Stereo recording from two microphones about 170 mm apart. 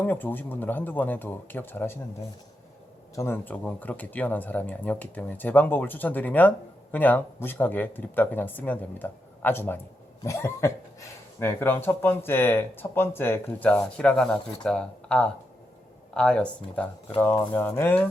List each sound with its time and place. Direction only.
0.0 s speech: 10° left (ahead or behind)
3.2 s speech: 15° left (ahead or behind)